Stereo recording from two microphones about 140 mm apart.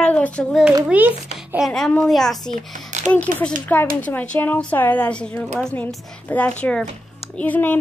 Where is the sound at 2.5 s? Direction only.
60° right (ahead or behind).